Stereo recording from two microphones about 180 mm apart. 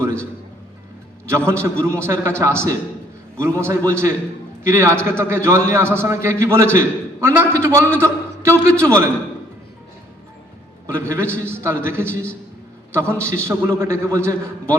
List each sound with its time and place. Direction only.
1.5 s a man's voice: 15° right (ahead or behind)
10.8 s a man's voice: 15° right (ahead or behind)